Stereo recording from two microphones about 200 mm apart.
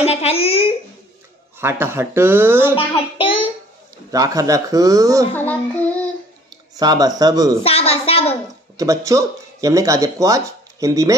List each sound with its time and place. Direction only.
0.0 s a child's voice: 30° left (ahead or behind)
1.6 s speech: 10° right (ahead or behind)
3.2 s a child's voice: 25° left (ahead or behind)
4.1 s speech: 15° right (ahead or behind)
5.3 s a child's voice: 10° left (ahead or behind)
6.8 s speech: 20° right (ahead or behind)
7.6 s a woman's voice: 30° left (ahead or behind)
8.7 s speech: 15° right (ahead or behind)